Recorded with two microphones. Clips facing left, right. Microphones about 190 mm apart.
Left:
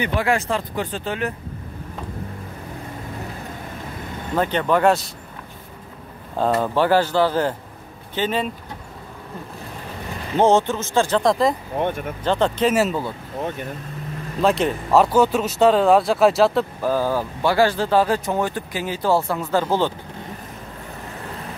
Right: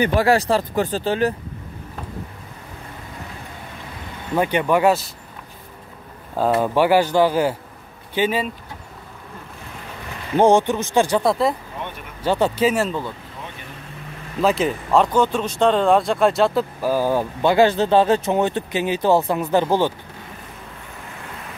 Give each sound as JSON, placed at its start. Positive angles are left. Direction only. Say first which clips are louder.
{"t": 0.0, "sound": "speech", "louder": "right 4 dB", "side_deg": -40}
{"t": 4.4, "sound": "speech", "louder": "right 1 dB", "side_deg": -10}
{"t": 6.3, "sound": "speech", "louder": "right 2 dB", "side_deg": -10}
{"t": 10.3, "sound": "speech", "louder": "right 2 dB", "side_deg": -15}
{"t": 11.8, "sound": "speech", "louder": "left 9 dB", "side_deg": 45}
{"t": 12.2, "sound": "speech", "louder": "right 2 dB", "side_deg": -10}
{"t": 12.7, "sound": "speech", "louder": "left 2 dB", "side_deg": 5}
{"t": 13.4, "sound": "speech", "louder": "left 10 dB", "side_deg": 45}
{"t": 14.4, "sound": "speech", "louder": "even", "side_deg": 0}